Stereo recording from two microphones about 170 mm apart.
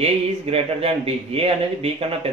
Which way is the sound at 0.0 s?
35° right (ahead or behind).